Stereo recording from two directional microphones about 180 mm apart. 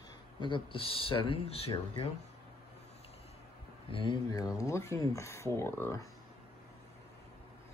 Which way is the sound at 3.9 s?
25° left (ahead or behind).